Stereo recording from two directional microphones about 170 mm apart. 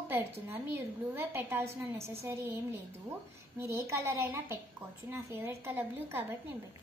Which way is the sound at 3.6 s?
15° right (ahead or behind).